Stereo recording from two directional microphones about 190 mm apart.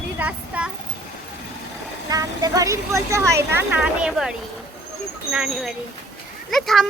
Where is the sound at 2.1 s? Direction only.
20° right (ahead or behind); by 4.3 s 5° right (ahead or behind).